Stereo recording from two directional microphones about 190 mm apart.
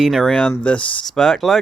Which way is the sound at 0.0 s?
Centre (ahead or behind).